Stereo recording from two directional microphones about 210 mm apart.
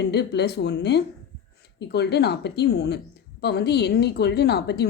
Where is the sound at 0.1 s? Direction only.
50° left (ahead or behind).